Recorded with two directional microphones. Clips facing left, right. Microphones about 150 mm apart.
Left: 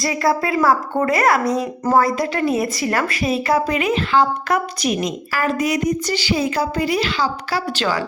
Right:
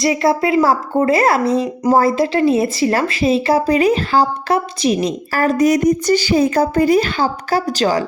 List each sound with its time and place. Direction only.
0.0 s a woman's voice: 25° right (ahead or behind); by 8.0 s 40° right (ahead or behind)